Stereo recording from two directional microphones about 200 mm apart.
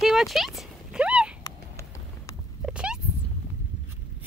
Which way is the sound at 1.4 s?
15° left (ahead or behind).